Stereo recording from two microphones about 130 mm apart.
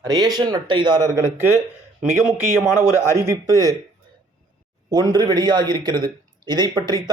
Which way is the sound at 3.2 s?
25° right (ahead or behind).